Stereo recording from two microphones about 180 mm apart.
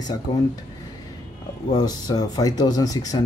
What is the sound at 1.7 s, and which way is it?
Speech, 20° left (ahead or behind).